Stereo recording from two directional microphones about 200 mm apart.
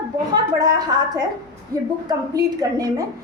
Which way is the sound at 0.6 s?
20° right (ahead or behind).